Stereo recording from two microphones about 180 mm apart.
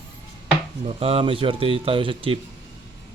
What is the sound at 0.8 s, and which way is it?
Speech, 30° right (ahead or behind).